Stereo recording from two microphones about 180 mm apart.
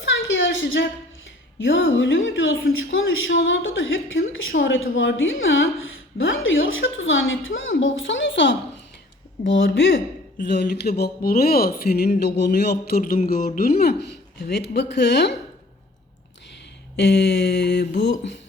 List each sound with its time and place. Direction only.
0.0 s a sound: 90° left
1.5 s speech: 90° left
10.4 s speech: 70° left (ahead or behind)
17.0 s speech: 70° left (ahead or behind)